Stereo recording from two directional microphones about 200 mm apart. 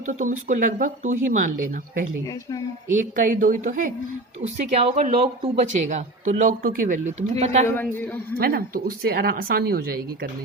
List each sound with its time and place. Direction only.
0.1 s speech: 40° right (ahead or behind)
3.0 s speech: 40° right (ahead or behind)
4.4 s speech: 30° right (ahead or behind)
8.4 s speech: 50° right (ahead or behind)